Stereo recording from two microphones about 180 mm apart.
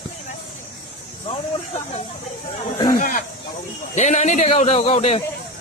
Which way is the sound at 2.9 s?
50° left (ahead or behind).